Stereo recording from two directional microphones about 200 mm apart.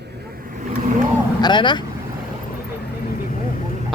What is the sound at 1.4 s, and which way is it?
Speech, 25° left (ahead or behind).